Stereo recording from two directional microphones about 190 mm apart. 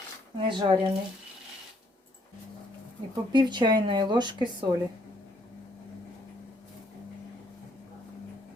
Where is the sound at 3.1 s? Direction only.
20° right (ahead or behind).